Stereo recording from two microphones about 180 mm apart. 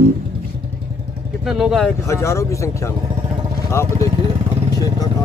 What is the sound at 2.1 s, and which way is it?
Speech, 15° left (ahead or behind).